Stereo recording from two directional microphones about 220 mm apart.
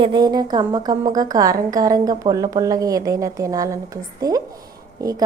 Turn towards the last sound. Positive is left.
turn(degrees=-15)  # may be behind; listen again after turning